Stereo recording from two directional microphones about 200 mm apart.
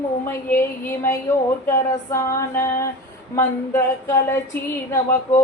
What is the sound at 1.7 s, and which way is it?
A woman's voice, 15° left (ahead or behind).